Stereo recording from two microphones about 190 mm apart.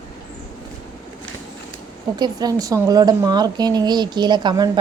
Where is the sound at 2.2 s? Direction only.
20° right (ahead or behind).